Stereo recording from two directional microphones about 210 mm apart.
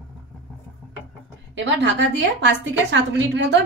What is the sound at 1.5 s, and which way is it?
A woman's voice, 60° right (ahead or behind).